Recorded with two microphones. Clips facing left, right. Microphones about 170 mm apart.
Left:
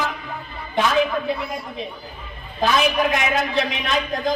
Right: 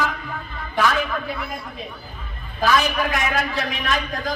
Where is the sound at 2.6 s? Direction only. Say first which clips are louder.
Left 1 dB; 20° left (ahead or behind).